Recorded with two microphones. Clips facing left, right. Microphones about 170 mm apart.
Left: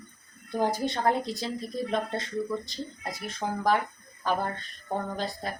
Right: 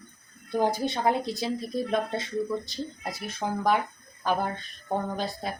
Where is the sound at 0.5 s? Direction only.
5° right (ahead or behind).